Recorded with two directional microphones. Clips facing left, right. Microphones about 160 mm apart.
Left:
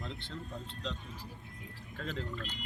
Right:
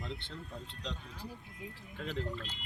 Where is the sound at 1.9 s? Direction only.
20° right (ahead or behind).